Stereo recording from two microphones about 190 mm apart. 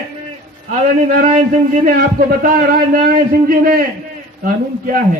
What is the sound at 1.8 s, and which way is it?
A man's voice, 50° right (ahead or behind).